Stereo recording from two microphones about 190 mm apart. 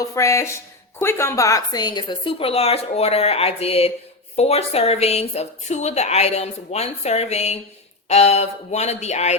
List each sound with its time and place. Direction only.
0.0 s speech: 15° left (ahead or behind); by 9.3 s 35° left (ahead or behind)